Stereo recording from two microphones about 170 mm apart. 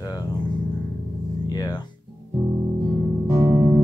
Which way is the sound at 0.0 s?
20° left (ahead or behind).